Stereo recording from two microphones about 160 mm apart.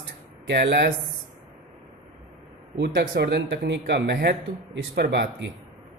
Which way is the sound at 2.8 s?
90° right.